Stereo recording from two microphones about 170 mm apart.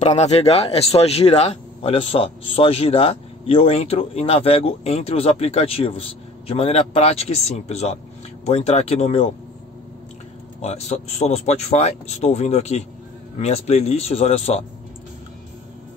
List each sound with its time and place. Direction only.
0.0 s speech: 40° left (ahead or behind)
10.6 s speech: 40° left (ahead or behind)